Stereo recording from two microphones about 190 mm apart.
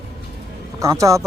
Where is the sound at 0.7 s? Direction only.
15° right (ahead or behind).